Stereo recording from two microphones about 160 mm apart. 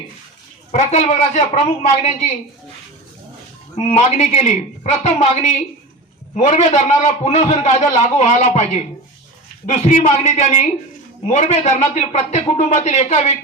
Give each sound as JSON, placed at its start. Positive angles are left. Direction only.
{"t": 0.7, "sound": "a man's voice", "side_deg": 45}
{"t": 3.8, "sound": "a man's voice", "side_deg": 45}